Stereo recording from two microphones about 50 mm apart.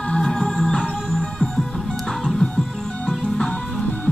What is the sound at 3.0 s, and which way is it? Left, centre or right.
Music, centre.